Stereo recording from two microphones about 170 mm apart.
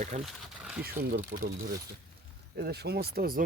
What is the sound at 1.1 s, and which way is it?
Speech, 60° right (ahead or behind).